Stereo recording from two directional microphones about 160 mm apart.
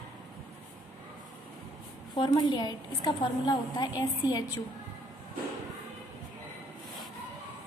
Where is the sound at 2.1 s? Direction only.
30° left (ahead or behind).